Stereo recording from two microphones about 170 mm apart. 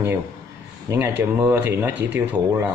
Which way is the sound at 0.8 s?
15° right (ahead or behind).